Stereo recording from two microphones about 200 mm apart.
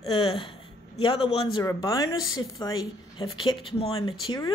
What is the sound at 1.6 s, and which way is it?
Speech, 15° left (ahead or behind).